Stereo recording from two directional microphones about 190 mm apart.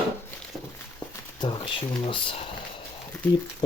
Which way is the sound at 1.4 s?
25° left (ahead or behind).